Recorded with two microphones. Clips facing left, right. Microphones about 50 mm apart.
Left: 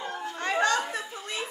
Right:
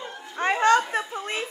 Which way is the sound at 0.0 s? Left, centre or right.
Left.